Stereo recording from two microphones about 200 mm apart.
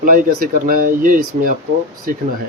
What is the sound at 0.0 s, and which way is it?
Speech, 45° right (ahead or behind).